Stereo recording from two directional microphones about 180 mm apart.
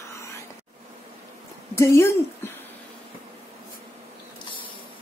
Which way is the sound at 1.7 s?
15° left (ahead or behind).